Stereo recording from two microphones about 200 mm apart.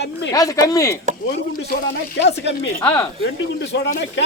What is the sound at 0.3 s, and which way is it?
Speech, 15° left (ahead or behind).